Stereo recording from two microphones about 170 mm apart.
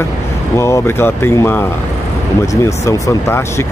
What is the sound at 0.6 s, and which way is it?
Speech, 15° left (ahead or behind).